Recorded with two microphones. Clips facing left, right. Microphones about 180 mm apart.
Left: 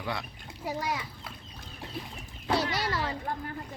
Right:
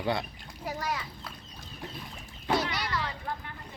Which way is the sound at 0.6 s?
20° left (ahead or behind).